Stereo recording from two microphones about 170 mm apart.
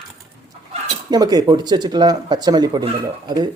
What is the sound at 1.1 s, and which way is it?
Speech, 25° right (ahead or behind).